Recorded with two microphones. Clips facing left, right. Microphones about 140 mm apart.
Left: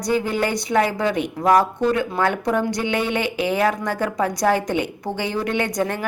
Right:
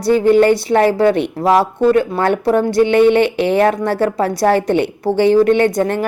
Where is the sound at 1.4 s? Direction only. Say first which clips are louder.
Right 3 dB; 25° right (ahead or behind).